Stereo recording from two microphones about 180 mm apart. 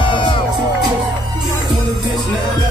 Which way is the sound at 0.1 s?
30° left (ahead or behind).